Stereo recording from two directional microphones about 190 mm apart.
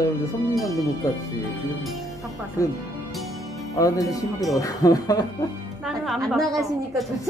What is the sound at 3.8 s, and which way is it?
Speech, 20° left (ahead or behind).